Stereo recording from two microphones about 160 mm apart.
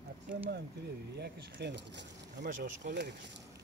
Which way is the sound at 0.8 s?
90° right.